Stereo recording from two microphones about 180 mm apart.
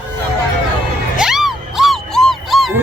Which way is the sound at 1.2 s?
Centre (ahead or behind).